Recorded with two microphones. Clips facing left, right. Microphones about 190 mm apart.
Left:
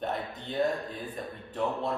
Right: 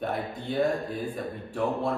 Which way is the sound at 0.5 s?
5° right (ahead or behind).